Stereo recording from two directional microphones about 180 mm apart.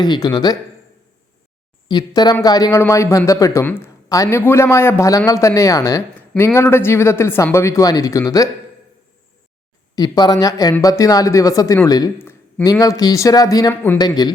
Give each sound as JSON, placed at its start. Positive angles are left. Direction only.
{"t": 0.0, "sound": "speech", "side_deg": 25}
{"t": 1.9, "sound": "speech", "side_deg": 20}
{"t": 9.9, "sound": "speech", "side_deg": 20}